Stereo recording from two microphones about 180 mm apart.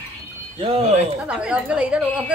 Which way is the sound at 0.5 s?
30° right (ahead or behind).